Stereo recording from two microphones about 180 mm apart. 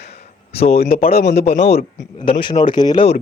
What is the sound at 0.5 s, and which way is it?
Speech, 35° left (ahead or behind).